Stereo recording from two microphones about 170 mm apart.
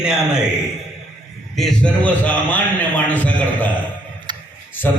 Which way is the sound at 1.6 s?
5° left (ahead or behind).